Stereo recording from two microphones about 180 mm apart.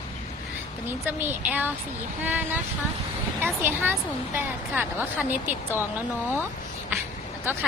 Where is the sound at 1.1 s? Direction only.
10° right (ahead or behind).